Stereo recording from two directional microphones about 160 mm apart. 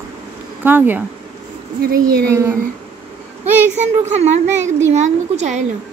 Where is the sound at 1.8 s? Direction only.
70° right (ahead or behind).